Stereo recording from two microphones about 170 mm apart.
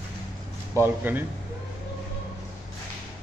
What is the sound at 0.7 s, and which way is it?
Speech, 15° right (ahead or behind).